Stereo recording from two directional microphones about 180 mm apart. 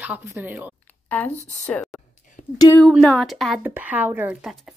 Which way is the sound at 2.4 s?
40° left (ahead or behind).